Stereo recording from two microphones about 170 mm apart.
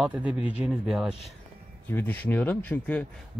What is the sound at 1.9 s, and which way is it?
Speech, 10° left (ahead or behind).